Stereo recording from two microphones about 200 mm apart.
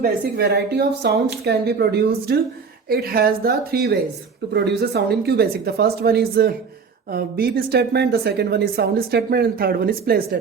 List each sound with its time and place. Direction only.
0.0 s a woman's voice: 55° right (ahead or behind)